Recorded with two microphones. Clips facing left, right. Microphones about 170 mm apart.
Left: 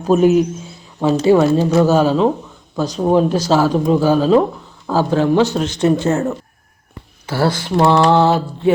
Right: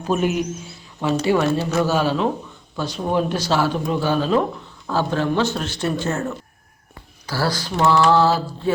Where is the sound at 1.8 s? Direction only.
45° left (ahead or behind).